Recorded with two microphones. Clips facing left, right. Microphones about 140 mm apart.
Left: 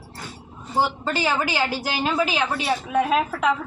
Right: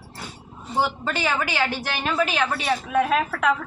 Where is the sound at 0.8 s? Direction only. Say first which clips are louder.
Left 1 dB; 10° left (ahead or behind).